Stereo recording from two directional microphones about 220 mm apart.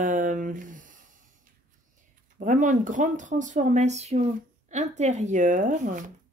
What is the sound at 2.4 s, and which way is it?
Speech, 35° right (ahead or behind).